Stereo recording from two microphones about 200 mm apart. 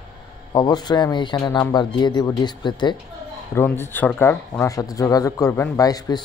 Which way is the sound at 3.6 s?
10° left (ahead or behind).